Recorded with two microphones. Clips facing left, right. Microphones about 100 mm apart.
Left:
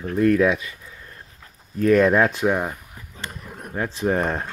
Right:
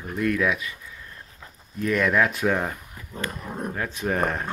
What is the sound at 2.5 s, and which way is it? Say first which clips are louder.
Speech: left 2 dB; 15° left (ahead or behind).